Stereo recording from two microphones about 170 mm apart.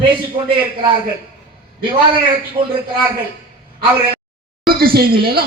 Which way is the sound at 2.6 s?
35° right (ahead or behind).